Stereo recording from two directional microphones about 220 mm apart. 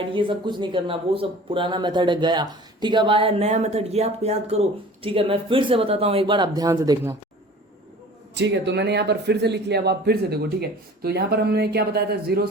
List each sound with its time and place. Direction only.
0.1 s speech: 20° right (ahead or behind)
8.4 s speech: 55° right (ahead or behind)